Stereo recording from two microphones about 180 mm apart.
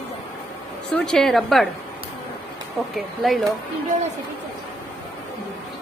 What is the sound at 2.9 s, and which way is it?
Speech, centre (ahead or behind).